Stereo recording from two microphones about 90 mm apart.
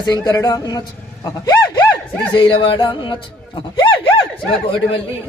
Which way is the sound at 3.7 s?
65° left (ahead or behind).